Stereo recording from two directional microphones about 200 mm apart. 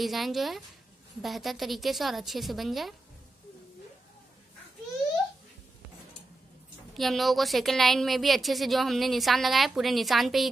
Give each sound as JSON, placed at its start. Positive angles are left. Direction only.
{"t": 0.0, "sound": "a woman's voice", "side_deg": 0}
{"t": 6.9, "sound": "a woman's voice", "side_deg": 0}